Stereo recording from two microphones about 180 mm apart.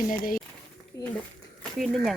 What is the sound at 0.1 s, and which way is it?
Speech, 50° left (ahead or behind).